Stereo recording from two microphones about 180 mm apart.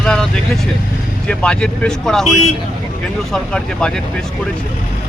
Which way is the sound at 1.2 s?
5° left (ahead or behind).